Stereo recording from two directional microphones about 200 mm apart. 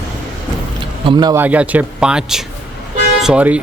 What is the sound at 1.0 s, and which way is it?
Speech, 20° right (ahead or behind).